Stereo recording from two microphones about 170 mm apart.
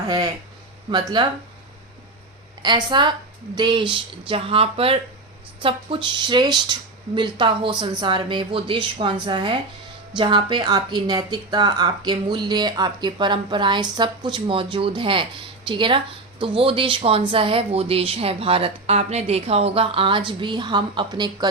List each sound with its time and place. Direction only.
0.9 s speech: 25° right (ahead or behind)
2.6 s speech: 25° right (ahead or behind)